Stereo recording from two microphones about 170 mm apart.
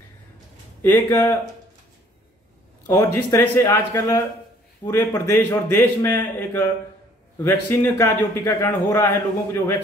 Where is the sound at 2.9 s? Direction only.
15° left (ahead or behind).